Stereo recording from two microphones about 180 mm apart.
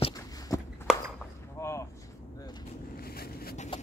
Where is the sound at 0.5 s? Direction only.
20° left (ahead or behind).